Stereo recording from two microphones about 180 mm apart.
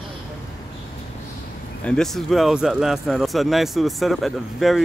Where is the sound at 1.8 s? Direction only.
5° left (ahead or behind).